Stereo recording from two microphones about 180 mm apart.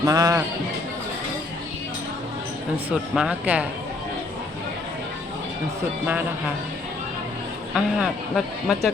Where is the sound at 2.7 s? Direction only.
5° right (ahead or behind).